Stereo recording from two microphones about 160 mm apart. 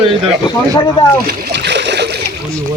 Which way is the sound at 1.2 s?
90° right.